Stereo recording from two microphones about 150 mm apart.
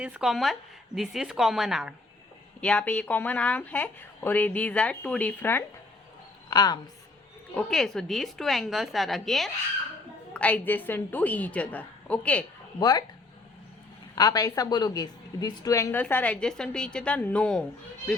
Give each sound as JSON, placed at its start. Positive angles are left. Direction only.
{"t": 0.0, "sound": "a woman's voice", "side_deg": -5}
{"t": 6.5, "sound": "a woman's voice", "side_deg": 25}
{"t": 7.5, "sound": "a woman's voice", "side_deg": 5}
{"t": 12.8, "sound": "speech", "side_deg": 25}
{"t": 14.2, "sound": "a woman's voice", "side_deg": 25}